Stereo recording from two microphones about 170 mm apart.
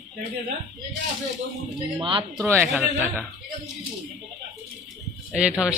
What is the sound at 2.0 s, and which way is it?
Speech, 30° right (ahead or behind).